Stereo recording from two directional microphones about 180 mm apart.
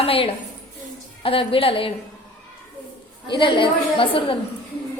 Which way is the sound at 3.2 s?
25° left (ahead or behind).